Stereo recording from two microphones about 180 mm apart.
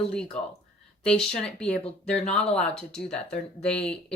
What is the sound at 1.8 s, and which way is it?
Speech, 35° left (ahead or behind).